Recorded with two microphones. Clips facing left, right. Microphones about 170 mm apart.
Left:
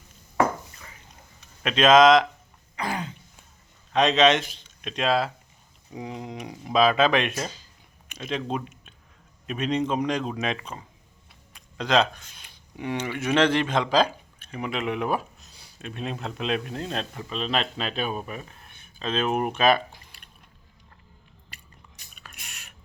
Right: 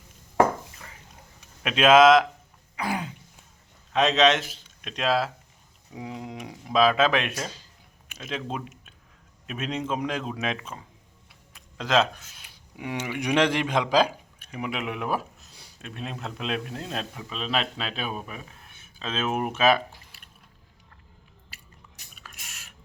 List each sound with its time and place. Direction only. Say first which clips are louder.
1.4 s speech: left 1 dB; 10° right (ahead or behind)
2.7 s throat clearing: right 1 dB; 5° right (ahead or behind)
3.9 s a man's voice: left 1 dB; centre (ahead or behind)
21.5 s biting: left 2 dB; 5° right (ahead or behind)
22.1 s a sound: left 1 dB; centre (ahead or behind)